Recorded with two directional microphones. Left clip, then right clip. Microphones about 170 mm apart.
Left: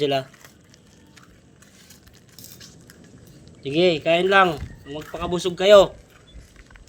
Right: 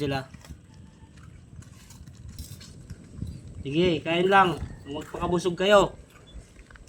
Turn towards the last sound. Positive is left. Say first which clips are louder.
# left 7 dB
turn(degrees=-45)  # may be behind; listen again after turning